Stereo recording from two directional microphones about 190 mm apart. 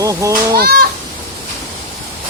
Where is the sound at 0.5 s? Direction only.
55° right (ahead or behind).